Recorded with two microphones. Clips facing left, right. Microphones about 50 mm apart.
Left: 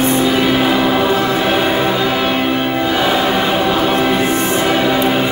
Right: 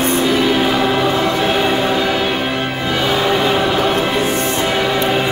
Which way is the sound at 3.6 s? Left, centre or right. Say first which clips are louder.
Left 1 dB; centre.